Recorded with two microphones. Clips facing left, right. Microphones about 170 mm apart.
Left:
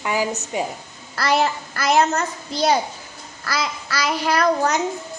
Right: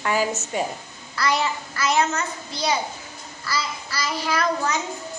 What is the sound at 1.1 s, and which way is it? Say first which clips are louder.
A child's voice: left 4 dB; 50° left (ahead or behind).